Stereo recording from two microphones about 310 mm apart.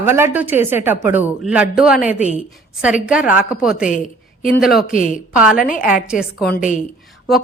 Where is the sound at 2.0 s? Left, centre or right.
Left.